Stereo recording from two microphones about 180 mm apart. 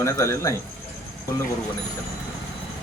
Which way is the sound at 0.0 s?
15° left (ahead or behind).